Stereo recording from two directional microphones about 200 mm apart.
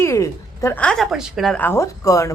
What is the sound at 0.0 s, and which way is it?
A woman's voice, 15° left (ahead or behind).